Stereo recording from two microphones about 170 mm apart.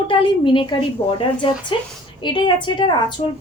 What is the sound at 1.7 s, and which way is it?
A woman's voice, 30° left (ahead or behind).